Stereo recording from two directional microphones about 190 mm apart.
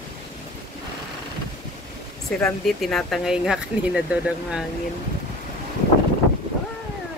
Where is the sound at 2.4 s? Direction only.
5° left (ahead or behind).